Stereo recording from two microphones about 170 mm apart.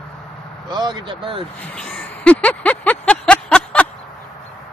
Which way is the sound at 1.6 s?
5° left (ahead or behind).